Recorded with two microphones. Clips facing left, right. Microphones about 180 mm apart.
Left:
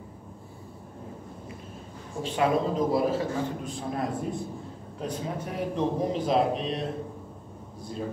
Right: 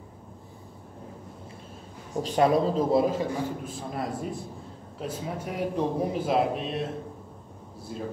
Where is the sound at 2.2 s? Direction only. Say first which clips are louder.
Right 3 dB; 40° right (ahead or behind).